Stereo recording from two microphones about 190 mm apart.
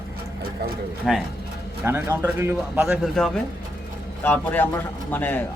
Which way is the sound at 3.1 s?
5° left (ahead or behind).